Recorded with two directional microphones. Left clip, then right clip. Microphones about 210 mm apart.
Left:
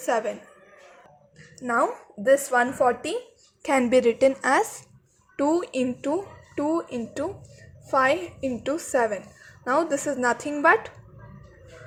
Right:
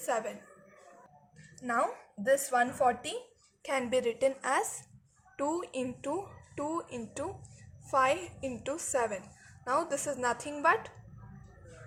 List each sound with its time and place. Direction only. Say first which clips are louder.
0.0 s a woman's voice: left 8 dB; 50° left (ahead or behind)
1.5 s a woman's voice: left 7 dB; 55° left (ahead or behind); by 10.9 s 40° left (ahead or behind)